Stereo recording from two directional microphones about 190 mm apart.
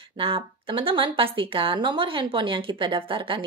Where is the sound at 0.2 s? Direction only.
30° right (ahead or behind).